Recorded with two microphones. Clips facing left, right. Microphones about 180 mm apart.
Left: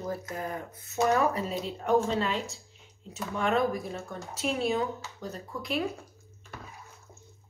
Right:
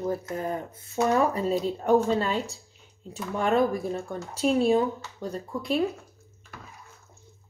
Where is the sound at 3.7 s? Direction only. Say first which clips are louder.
Right 5 dB; 35° right (ahead or behind).